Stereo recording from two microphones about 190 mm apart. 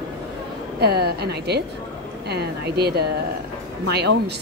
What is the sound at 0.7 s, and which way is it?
Speech, 55° right (ahead or behind).